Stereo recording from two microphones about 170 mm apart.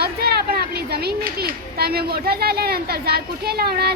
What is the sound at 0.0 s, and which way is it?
A child's voice, 65° right (ahead or behind).